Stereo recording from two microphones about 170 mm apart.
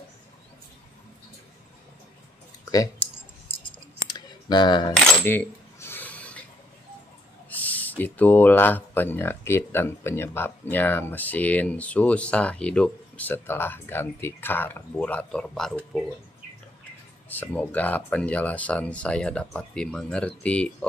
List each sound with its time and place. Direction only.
2.6 s clicking: 20° left (ahead or behind)
4.1 s camera: 25° left (ahead or behind)
4.9 s coin: 10° left (ahead or behind)
7.4 s speech: 10° left (ahead or behind)
17.3 s speech: 10° left (ahead or behind)